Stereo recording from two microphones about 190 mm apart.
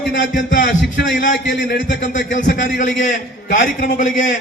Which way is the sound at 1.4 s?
70° left (ahead or behind).